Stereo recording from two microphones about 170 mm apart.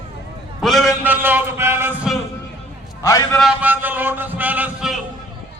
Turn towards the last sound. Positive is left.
turn(degrees=-5)  # may be behind; listen again after turning